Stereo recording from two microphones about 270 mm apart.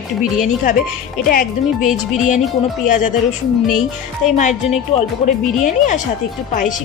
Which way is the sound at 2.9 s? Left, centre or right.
Left.